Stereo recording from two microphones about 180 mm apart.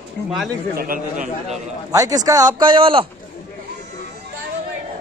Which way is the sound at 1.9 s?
20° right (ahead or behind).